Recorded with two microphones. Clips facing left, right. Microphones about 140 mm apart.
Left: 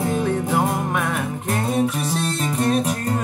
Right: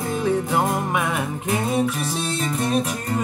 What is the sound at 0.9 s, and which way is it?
Music, 5° right (ahead or behind).